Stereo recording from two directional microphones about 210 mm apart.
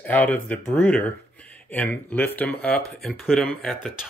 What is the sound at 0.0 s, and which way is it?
Speech, 10° left (ahead or behind).